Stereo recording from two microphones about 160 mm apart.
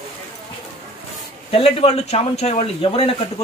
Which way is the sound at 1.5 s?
40° left (ahead or behind).